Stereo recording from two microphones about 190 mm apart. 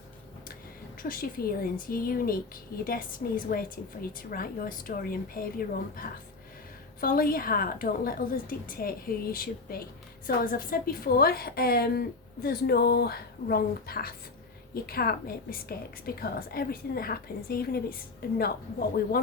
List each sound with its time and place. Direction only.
1.0 s a woman's voice: 50° left (ahead or behind)